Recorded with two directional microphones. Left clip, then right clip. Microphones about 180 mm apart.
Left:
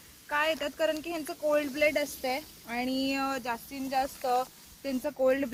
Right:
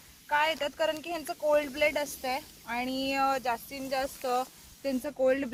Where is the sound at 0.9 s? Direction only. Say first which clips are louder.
Even; 45° right (ahead or behind).